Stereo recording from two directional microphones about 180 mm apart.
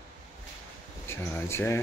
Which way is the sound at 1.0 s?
15° left (ahead or behind).